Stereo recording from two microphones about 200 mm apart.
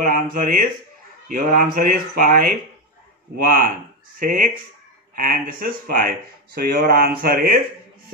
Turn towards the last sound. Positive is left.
turn(degrees=-50)  # may be behind; listen again after turning